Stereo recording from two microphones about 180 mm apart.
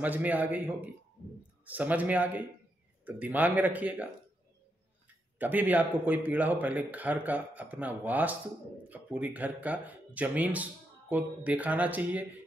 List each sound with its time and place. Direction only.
0.0 s speech: 10° right (ahead or behind)
5.4 s speech: 10° right (ahead or behind)